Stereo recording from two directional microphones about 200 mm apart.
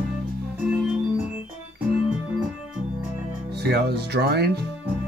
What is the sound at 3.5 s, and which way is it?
Speech, 55° right (ahead or behind).